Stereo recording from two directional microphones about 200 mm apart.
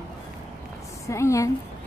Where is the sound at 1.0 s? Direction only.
15° left (ahead or behind).